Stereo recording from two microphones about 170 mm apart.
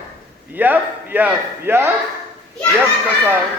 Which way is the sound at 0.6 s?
10° right (ahead or behind).